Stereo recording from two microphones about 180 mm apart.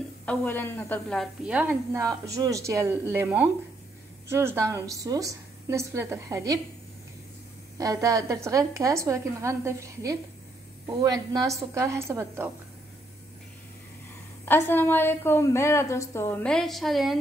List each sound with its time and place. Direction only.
0.2 s a woman's voice: 10° left (ahead or behind); by 6.6 s 20° right (ahead or behind)
7.7 s a woman's voice: 20° right (ahead or behind)
14.4 s a woman's voice: 10° left (ahead or behind)